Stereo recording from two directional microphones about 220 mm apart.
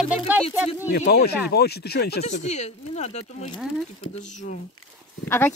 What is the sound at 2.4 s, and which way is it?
Speech, 30° left (ahead or behind).